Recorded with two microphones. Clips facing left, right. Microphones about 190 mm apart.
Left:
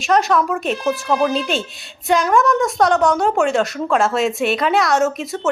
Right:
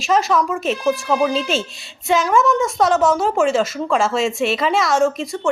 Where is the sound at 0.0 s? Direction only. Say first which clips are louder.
Left 1 dB; centre (ahead or behind).